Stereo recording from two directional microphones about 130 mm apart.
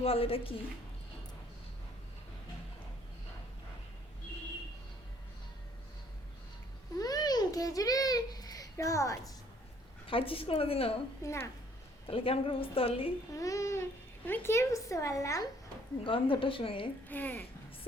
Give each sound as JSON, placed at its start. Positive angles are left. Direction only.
{"t": 0.0, "sound": "a woman's voice", "side_deg": 50}
{"t": 7.0, "sound": "babbling", "side_deg": 30}
{"t": 10.1, "sound": "a woman's voice", "side_deg": 45}
{"t": 11.2, "sound": "a child's voice", "side_deg": 25}
{"t": 12.0, "sound": "a woman's voice", "side_deg": 45}
{"t": 13.3, "sound": "a child's voice", "side_deg": 25}
{"t": 16.0, "sound": "a woman's voice", "side_deg": 40}
{"t": 17.1, "sound": "a child's voice", "side_deg": 15}